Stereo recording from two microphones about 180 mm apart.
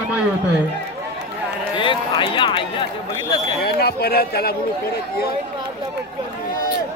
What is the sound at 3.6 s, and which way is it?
Speech, 60° left (ahead or behind).